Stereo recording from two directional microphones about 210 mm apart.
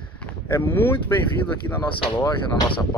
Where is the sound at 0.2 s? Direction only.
10° left (ahead or behind).